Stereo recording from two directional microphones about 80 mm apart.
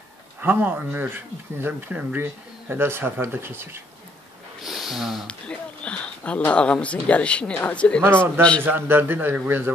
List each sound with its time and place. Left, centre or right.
0.4 s speech: right
4.6 s speech: centre
5.2 s speech: centre
8.6 s speech: right